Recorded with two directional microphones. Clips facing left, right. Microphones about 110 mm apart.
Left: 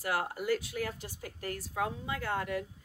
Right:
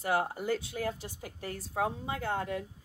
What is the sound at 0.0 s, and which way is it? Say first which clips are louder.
A woman's voice: right 3 dB; 25° right (ahead or behind).